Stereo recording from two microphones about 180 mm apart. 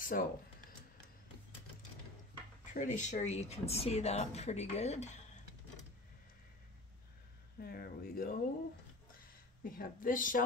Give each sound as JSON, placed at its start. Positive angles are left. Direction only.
{"t": 0.0, "sound": "speech", "side_deg": 50}
{"t": 2.6, "sound": "speech", "side_deg": 40}
{"t": 7.6, "sound": "speech", "side_deg": 60}
{"t": 9.6, "sound": "speech", "side_deg": 55}